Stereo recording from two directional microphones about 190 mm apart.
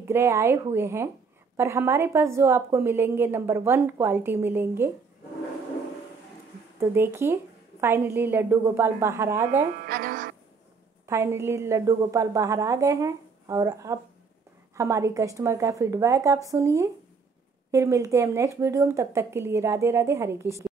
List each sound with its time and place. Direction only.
0.0 s a woman's voice: 15° right (ahead or behind)
6.8 s a woman's voice: 10° right (ahead or behind)
9.8 s music: 50° right (ahead or behind)
11.1 s a woman's voice: 15° right (ahead or behind)